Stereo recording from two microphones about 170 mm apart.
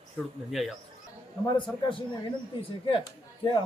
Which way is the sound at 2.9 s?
30° left (ahead or behind).